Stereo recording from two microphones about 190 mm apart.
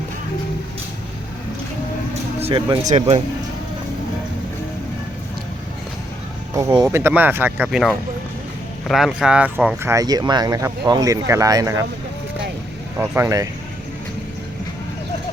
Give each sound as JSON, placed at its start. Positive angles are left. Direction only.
{"t": 2.4, "sound": "speech", "side_deg": -25}
{"t": 2.8, "sound": "speech", "side_deg": -40}
{"t": 6.6, "sound": "speech", "side_deg": -20}
{"t": 6.9, "sound": "speech", "side_deg": -10}
{"t": 13.0, "sound": "speech", "side_deg": -15}